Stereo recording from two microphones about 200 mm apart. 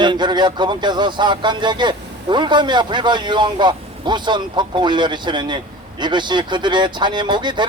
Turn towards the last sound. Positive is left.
turn(degrees=-20)  # may be behind; listen again after turning